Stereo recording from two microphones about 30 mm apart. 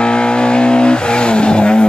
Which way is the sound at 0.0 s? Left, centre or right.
Left.